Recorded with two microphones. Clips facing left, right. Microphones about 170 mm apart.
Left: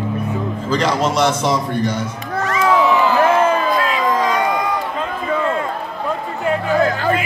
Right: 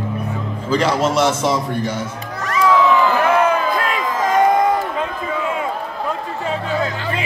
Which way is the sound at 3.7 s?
50° right (ahead or behind).